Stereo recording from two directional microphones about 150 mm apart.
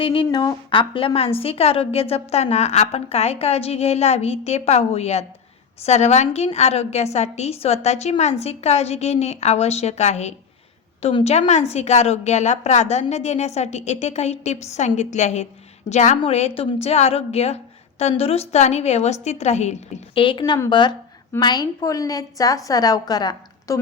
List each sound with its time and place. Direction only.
0.0 s a woman's voice: 35° left (ahead or behind)
20.1 s a woman's voice: 35° left (ahead or behind)